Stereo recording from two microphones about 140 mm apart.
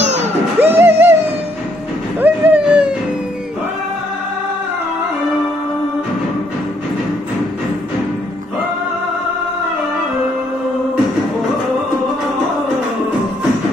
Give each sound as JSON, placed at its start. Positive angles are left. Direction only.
{"t": 0.0, "sound": "music", "side_deg": -55}
{"t": 0.6, "sound": "music", "side_deg": -15}
{"t": 2.1, "sound": "a sound", "side_deg": -10}